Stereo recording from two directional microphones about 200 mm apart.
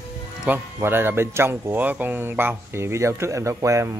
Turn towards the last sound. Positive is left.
turn(degrees=-15)  # may be behind; listen again after turning